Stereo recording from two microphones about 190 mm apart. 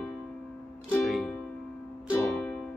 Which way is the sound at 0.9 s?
5° left (ahead or behind).